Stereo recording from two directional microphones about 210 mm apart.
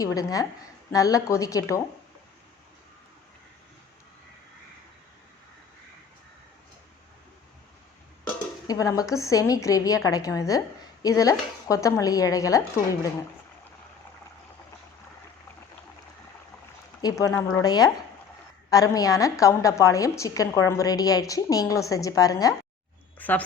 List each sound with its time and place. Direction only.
0.0 s a woman's voice: 15° left (ahead or behind)
8.6 s a woman's voice: 15° left (ahead or behind)
17.0 s a woman's voice: 15° left (ahead or behind)